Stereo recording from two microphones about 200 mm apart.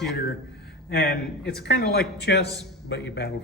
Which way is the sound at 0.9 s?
50° left (ahead or behind).